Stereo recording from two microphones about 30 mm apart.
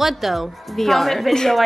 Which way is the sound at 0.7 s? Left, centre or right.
Centre.